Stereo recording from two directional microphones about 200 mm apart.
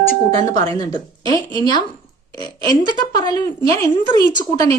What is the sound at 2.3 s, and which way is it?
A woman's voice, 20° left (ahead or behind).